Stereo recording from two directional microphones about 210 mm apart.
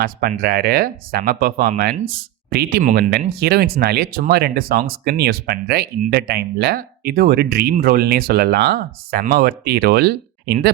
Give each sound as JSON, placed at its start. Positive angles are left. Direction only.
{"t": 0.0, "sound": "speech", "side_deg": -45}